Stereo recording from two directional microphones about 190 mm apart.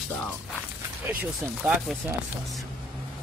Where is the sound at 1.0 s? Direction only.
10° right (ahead or behind).